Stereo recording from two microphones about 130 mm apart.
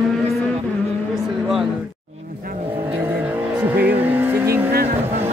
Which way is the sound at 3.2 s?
15° right (ahead or behind).